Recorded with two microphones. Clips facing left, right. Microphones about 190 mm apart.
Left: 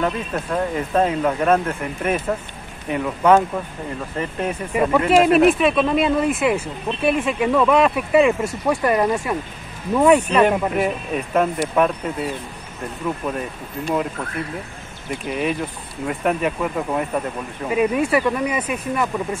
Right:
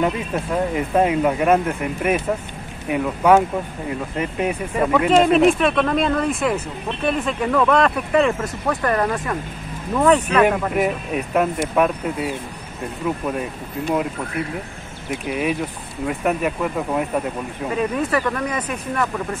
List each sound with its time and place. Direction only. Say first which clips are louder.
0.0 s speech: right 1 dB; 10° right (ahead or behind); by 10.4 s 10° left (ahead or behind)
10.7 s speech: right 1 dB; 5° right (ahead or behind)
15.0 s speech: right 1 dB; 5° right (ahead or behind)
17.6 s speech: left 3 dB; 10° left (ahead or behind)